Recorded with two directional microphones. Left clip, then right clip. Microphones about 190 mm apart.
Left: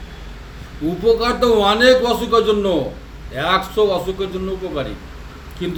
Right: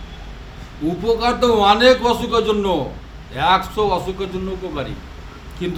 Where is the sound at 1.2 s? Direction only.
25° right (ahead or behind).